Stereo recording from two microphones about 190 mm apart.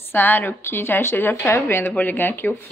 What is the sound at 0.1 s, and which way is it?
A woman's voice, 10° left (ahead or behind).